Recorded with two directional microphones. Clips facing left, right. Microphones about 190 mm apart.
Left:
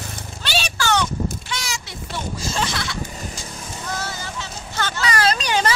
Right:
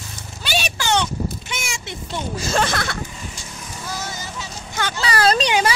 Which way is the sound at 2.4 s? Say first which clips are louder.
Right 6 dB; 65° right (ahead or behind).